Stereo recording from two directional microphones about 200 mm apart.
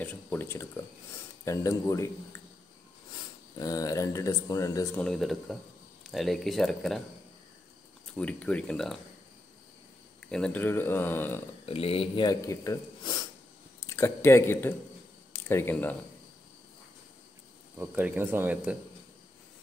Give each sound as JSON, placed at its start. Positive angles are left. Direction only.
{"t": 0.0, "sound": "speech", "side_deg": 10}
{"t": 3.5, "sound": "speech", "side_deg": 20}
{"t": 5.0, "sound": "speech", "side_deg": 0}
{"t": 8.2, "sound": "speech", "side_deg": 5}
{"t": 10.2, "sound": "speech", "side_deg": 5}
{"t": 11.6, "sound": "speech", "side_deg": 30}
{"t": 17.7, "sound": "speech", "side_deg": -10}